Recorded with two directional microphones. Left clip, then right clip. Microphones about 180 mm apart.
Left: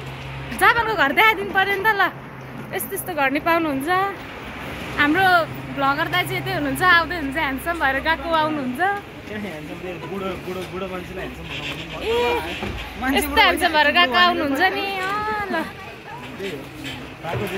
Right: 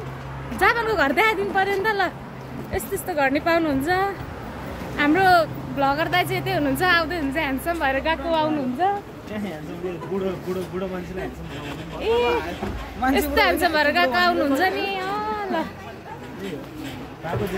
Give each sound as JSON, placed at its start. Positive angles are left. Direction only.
{"t": 0.6, "sound": "a woman's voice", "side_deg": -20}
{"t": 5.2, "sound": "speech", "side_deg": -30}
{"t": 13.1, "sound": "a woman's voice", "side_deg": -20}